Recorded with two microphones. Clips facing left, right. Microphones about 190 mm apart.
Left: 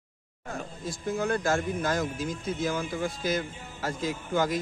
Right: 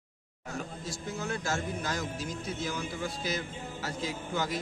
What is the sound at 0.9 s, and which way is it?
Speech, 55° left (ahead or behind).